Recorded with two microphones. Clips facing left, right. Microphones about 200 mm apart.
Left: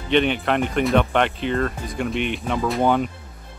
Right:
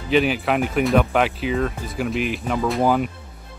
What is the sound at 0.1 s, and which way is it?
Speech, 5° right (ahead or behind).